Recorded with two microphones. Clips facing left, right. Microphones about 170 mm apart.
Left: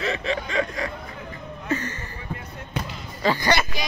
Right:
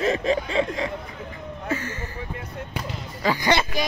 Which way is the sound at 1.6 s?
10° right (ahead or behind).